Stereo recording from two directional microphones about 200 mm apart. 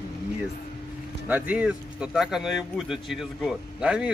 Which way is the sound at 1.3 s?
10° right (ahead or behind).